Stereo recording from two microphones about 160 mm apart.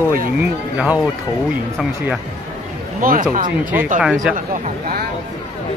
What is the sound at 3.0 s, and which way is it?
Speech, 60° right (ahead or behind).